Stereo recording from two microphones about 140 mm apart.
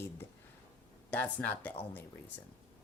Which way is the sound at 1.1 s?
10° left (ahead or behind).